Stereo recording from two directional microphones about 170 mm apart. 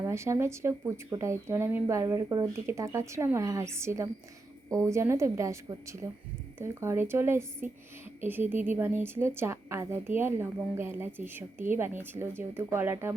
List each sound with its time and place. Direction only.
0.0 s speech: 15° right (ahead or behind)